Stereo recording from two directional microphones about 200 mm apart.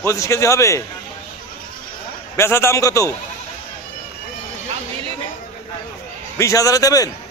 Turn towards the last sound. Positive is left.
turn(degrees=20)  # may be behind; listen again after turning